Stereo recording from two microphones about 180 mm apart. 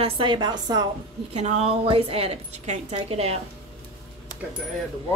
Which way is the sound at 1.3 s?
40° right (ahead or behind).